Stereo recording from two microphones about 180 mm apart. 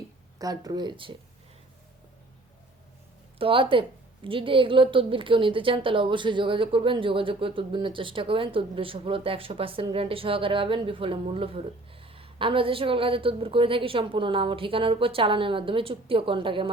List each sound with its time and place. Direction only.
0.3 s a woman's voice: 20° right (ahead or behind)
3.3 s a woman's voice: 30° right (ahead or behind)